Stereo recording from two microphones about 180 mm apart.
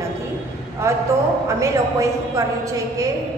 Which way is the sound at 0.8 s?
15° right (ahead or behind).